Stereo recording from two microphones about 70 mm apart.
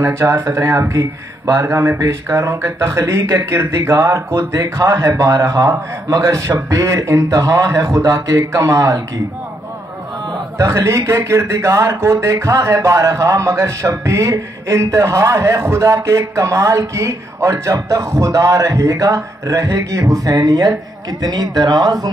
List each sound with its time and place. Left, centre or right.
0.0 s speech: right
10.6 s speech: right